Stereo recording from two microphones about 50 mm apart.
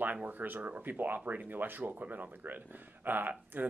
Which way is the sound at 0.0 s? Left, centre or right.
Right.